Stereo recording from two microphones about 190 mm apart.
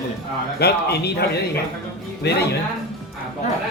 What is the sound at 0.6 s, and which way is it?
Speech, 60° left (ahead or behind).